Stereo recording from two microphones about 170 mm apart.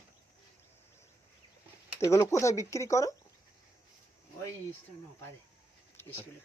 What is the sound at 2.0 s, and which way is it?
Speech, 15° left (ahead or behind).